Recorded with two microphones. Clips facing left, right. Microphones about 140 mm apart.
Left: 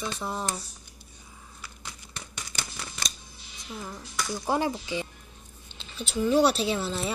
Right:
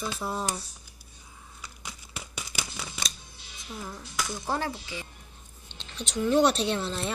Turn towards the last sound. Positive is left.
turn(degrees=5)  # may be behind; listen again after turning